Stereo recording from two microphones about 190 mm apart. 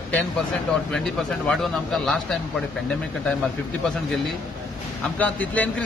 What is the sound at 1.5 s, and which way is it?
Speech, centre (ahead or behind).